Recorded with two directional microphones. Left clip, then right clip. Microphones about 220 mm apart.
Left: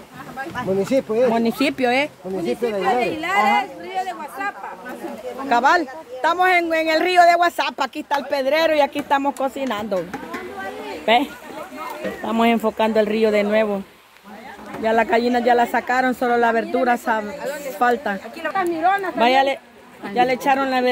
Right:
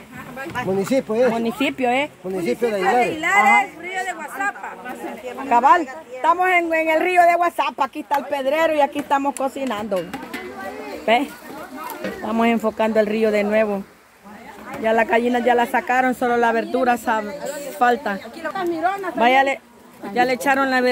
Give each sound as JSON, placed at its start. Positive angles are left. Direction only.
{"t": 0.7, "sound": "speech", "side_deg": -45}
{"t": 1.3, "sound": "speech", "side_deg": 20}
{"t": 2.4, "sound": "speech", "side_deg": -45}
{"t": 3.2, "sound": "a woman's voice", "side_deg": 5}
{"t": 12.3, "sound": "speech", "side_deg": 5}
{"t": 14.8, "sound": "speech", "side_deg": 5}
{"t": 18.8, "sound": "speech", "side_deg": -10}
{"t": 19.1, "sound": "speech", "side_deg": 0}